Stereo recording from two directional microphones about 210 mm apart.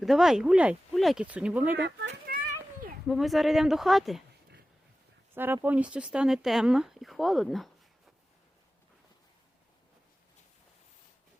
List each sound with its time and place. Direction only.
0.0 s speech: centre (ahead or behind)
1.8 s a child's voice: 55° right (ahead or behind)
3.1 s speech: centre (ahead or behind)
5.3 s speech: 10° right (ahead or behind)